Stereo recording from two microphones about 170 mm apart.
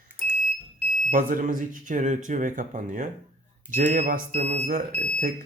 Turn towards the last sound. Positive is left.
turn(degrees=-45)  # may be behind; listen again after turning